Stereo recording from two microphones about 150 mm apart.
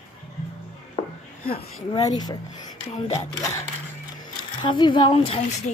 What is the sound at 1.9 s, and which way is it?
Speech, 25° left (ahead or behind).